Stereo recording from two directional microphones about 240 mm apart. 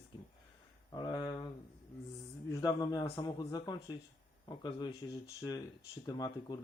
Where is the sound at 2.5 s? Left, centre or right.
Centre.